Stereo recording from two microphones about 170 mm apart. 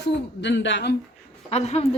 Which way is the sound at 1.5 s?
40° left (ahead or behind).